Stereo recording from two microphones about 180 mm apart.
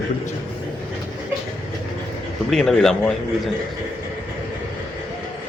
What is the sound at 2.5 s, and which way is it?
Speech, centre (ahead or behind).